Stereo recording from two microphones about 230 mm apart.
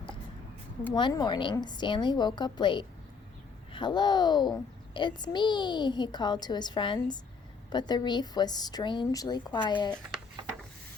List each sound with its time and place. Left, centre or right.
0.9 s a child's voice: centre